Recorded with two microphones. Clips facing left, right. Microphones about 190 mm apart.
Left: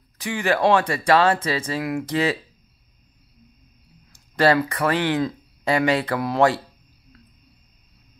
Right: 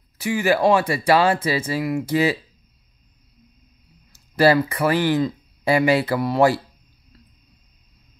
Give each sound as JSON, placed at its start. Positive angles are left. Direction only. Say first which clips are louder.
{"t": 0.2, "sound": "speech", "louder": "right 2 dB", "side_deg": -5}
{"t": 4.1, "sound": "speech", "louder": "right 2 dB", "side_deg": -10}